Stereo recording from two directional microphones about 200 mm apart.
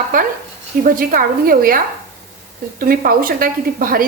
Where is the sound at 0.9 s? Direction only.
45° right (ahead or behind).